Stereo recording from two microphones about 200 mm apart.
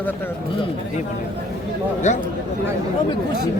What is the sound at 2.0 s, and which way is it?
Speech, 35° left (ahead or behind).